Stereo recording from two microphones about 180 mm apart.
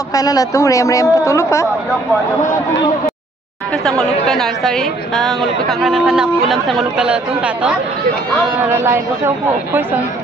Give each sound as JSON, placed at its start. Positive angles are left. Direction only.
{"t": 0.1, "sound": "speech", "side_deg": 20}
{"t": 4.0, "sound": "a woman's voice", "side_deg": 0}